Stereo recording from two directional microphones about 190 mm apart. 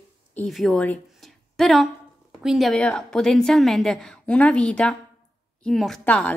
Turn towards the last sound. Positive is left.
turn(degrees=5)  # may be behind; listen again after turning